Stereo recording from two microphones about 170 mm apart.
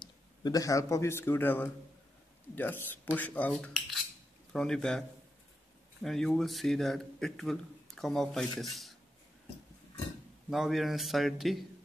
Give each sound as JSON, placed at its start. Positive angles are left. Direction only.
{"t": 0.0, "sound": "a man's voice", "side_deg": 20}
{"t": 6.0, "sound": "a man's voice", "side_deg": 0}
{"t": 10.5, "sound": "a man's voice", "side_deg": 0}